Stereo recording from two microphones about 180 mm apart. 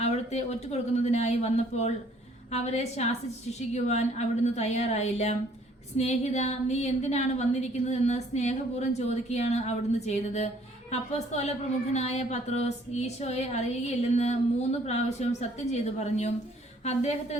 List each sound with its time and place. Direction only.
0.0 s a woman's voice: 40° left (ahead or behind)